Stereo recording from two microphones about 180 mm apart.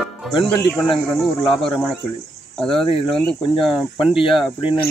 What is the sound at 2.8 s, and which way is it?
Speech, 30° left (ahead or behind).